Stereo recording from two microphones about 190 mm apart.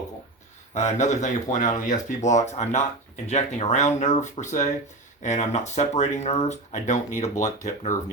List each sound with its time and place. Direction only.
0.7 s speech: 40° left (ahead or behind)